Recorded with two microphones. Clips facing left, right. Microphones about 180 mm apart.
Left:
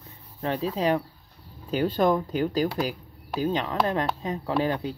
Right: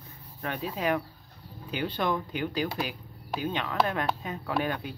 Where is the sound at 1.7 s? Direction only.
40° left (ahead or behind).